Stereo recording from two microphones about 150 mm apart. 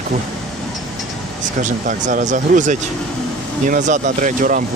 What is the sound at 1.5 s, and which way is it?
Speech, 60° right (ahead or behind).